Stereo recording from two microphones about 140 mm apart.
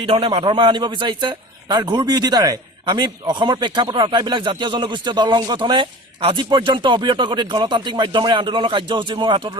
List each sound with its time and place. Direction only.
0.0 s a man's voice: 40° right (ahead or behind)